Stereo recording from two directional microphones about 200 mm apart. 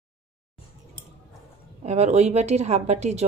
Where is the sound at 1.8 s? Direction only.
35° right (ahead or behind).